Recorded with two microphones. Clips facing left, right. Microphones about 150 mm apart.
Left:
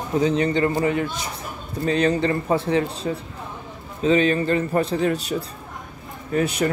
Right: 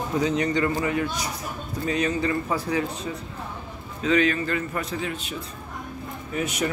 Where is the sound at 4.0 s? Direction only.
25° left (ahead or behind).